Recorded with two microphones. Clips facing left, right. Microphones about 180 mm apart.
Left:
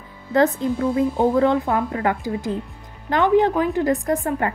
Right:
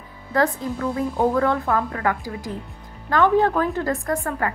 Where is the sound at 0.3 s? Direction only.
20° left (ahead or behind).